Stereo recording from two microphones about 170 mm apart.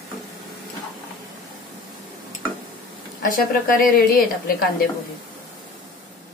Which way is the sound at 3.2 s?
55° left (ahead or behind).